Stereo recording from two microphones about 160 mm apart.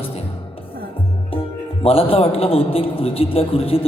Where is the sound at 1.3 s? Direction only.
35° left (ahead or behind).